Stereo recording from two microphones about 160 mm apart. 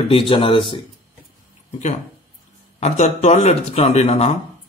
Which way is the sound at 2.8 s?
45° left (ahead or behind).